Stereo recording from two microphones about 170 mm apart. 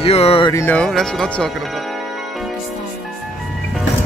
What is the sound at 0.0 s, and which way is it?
Speech, 35° left (ahead or behind).